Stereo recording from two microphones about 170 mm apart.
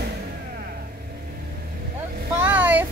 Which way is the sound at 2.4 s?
10° right (ahead or behind).